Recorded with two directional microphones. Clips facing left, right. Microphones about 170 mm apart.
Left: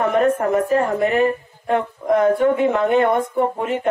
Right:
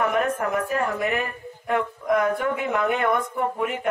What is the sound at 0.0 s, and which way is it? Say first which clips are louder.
A woman's voice: left 6 dB; 35° left (ahead or behind).